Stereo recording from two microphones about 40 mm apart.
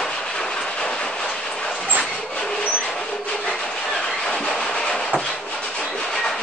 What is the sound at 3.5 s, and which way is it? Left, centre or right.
Train, centre.